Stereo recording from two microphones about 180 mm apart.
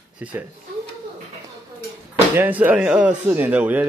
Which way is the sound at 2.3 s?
10° right (ahead or behind).